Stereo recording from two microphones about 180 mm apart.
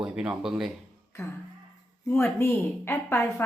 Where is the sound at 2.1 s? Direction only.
15° left (ahead or behind).